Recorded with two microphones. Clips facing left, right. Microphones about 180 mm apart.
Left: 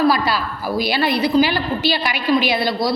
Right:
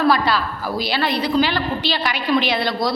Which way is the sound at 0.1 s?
10° left (ahead or behind).